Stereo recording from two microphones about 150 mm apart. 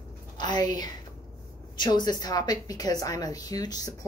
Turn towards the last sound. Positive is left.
turn(degrees=25)  # may be behind; listen again after turning